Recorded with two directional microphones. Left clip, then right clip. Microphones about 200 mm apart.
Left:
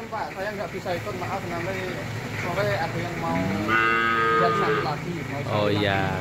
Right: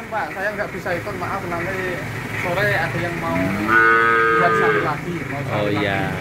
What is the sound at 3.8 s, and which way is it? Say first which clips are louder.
Cattle: right 9 dB; 45° left (ahead or behind).